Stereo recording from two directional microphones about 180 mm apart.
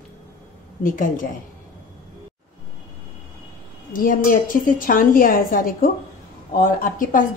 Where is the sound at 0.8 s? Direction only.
50° left (ahead or behind).